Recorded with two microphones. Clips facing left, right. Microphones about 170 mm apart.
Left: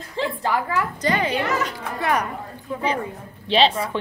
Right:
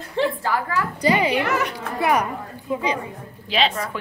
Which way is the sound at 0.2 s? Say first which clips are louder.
Right 4 dB; 60° right (ahead or behind).